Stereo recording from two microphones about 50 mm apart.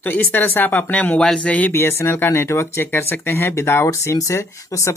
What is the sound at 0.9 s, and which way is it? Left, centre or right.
Speech, left.